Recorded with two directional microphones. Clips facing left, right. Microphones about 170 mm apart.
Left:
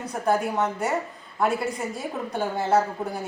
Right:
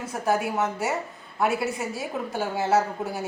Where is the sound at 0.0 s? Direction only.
5° right (ahead or behind).